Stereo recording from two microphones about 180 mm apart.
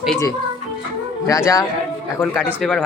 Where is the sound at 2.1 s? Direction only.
10° left (ahead or behind).